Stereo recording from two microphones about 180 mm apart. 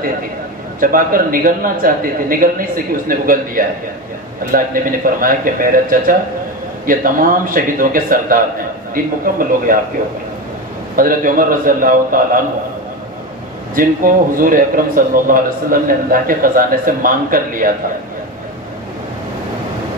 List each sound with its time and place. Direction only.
0.7 s a man's voice: 50° right (ahead or behind)
11.0 s a man's voice: 50° right (ahead or behind)
13.7 s a man's voice: 50° right (ahead or behind)